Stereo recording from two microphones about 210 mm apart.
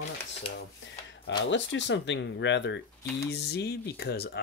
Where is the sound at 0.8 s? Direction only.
60° left (ahead or behind).